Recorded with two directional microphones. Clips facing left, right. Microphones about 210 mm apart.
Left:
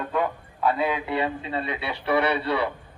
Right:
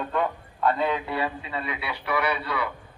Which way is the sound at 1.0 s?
25° left (ahead or behind).